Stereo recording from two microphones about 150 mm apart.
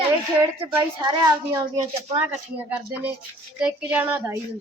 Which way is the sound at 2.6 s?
10° right (ahead or behind).